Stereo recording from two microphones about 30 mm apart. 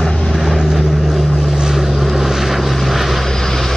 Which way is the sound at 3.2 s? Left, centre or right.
Centre.